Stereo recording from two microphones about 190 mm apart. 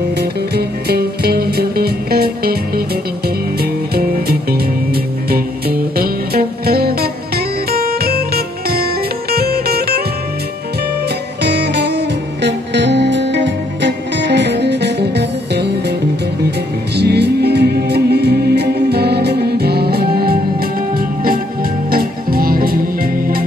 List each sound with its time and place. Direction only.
0.2 s music: 55° right (ahead or behind)
3.9 s music: 50° right (ahead or behind)
9.3 s music: 55° right (ahead or behind)
11.4 s music: 60° right (ahead or behind)
21.9 s music: 50° right (ahead or behind)